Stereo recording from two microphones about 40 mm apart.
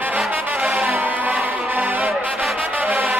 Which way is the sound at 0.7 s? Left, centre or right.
Right.